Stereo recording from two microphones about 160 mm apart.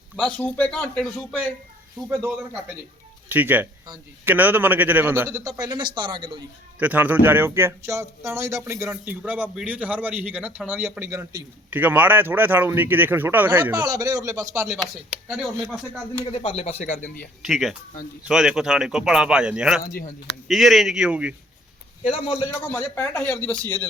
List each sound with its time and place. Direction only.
0.2 s speech: 5° left (ahead or behind)
3.2 s speech: 10° right (ahead or behind); by 6.4 s 30° right (ahead or behind)
6.7 s speech: 10° right (ahead or behind)
14.7 s speech: centre (ahead or behind)
16.3 s speech: 35° left (ahead or behind)
17.4 s speech: centre (ahead or behind)
19.8 s speech: 65° left (ahead or behind)
20.5 s speech: centre (ahead or behind)
22.0 s speech: 35° left (ahead or behind)
22.6 s speech: 10° left (ahead or behind)